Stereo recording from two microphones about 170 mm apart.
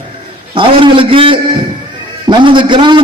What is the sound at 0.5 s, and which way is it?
A man's voice, 30° right (ahead or behind).